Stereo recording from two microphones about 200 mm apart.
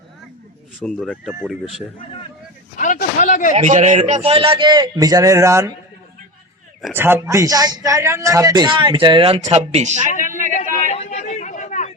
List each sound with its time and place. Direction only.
0.8 s speech: 5° left (ahead or behind)
2.7 s speech: 40° left (ahead or behind)
3.5 s a man's voice: 35° right (ahead or behind); by 5.7 s 15° right (ahead or behind)
6.8 s a man's voice: 10° right (ahead or behind); by 10.0 s 35° right (ahead or behind)
10.5 s chatter: 35° left (ahead or behind)